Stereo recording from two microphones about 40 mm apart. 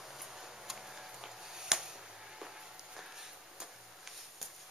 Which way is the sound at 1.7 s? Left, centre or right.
Centre.